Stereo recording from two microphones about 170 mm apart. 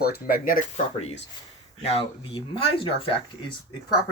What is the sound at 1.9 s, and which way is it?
Speech, 30° left (ahead or behind).